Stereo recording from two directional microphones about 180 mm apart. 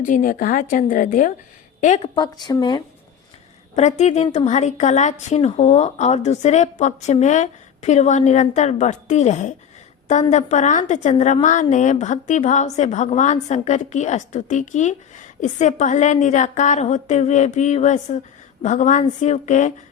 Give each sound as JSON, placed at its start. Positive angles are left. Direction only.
{"t": 0.0, "sound": "a woman's voice", "side_deg": 45}
{"t": 2.1, "sound": "speech", "side_deg": 20}
{"t": 3.8, "sound": "a woman's voice", "side_deg": 40}